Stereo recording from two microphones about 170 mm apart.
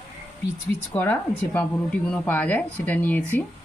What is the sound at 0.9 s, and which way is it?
Speech, 10° left (ahead or behind).